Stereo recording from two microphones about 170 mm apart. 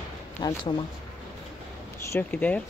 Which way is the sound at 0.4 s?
25° left (ahead or behind).